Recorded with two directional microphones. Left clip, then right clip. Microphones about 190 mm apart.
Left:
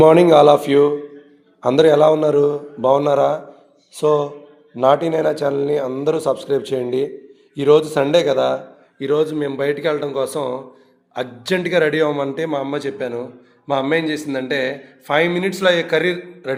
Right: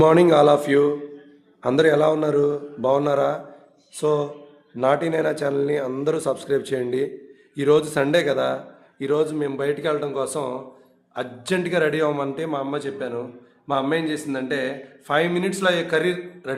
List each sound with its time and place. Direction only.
0.0 s a man's voice: 5° left (ahead or behind)